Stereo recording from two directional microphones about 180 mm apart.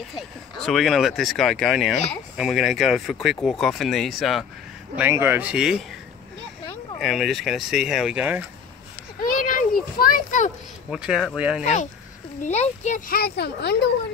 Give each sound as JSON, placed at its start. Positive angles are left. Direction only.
{"t": 0.7, "sound": "speech", "side_deg": 0}
{"t": 4.9, "sound": "speech", "side_deg": -10}
{"t": 7.0, "sound": "speech", "side_deg": 0}
{"t": 9.2, "sound": "a sound", "side_deg": 50}
{"t": 10.9, "sound": "speech", "side_deg": -5}
{"t": 11.6, "sound": "speech", "side_deg": 40}